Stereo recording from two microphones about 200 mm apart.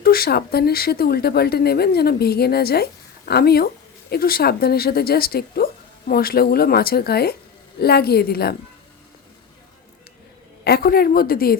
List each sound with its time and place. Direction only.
0.0 s speech: 50° left (ahead or behind)
10.6 s speech: 50° left (ahead or behind)